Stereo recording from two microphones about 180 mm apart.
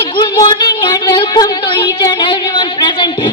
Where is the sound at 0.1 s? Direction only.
25° left (ahead or behind).